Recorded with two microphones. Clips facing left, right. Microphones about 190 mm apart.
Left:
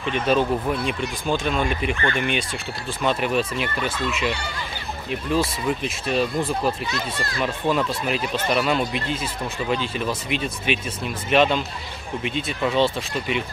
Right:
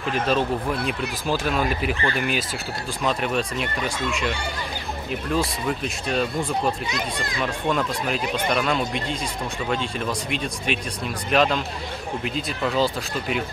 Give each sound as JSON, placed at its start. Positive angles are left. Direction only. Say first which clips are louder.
{"t": 0.1, "sound": "speech", "louder": "left 2 dB", "side_deg": 0}
{"t": 6.9, "sound": "speech", "louder": "even", "side_deg": -15}
{"t": 7.3, "sound": "speech", "louder": "left 2 dB", "side_deg": 0}